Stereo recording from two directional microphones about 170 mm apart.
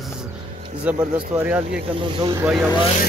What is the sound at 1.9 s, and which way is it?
Speech, 30° right (ahead or behind).